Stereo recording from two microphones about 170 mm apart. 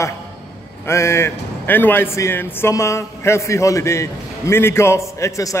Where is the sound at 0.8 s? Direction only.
15° left (ahead or behind).